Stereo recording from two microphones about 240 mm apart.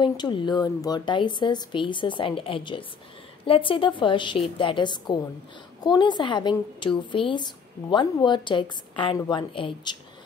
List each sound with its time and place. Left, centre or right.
0.0 s a woman's voice: centre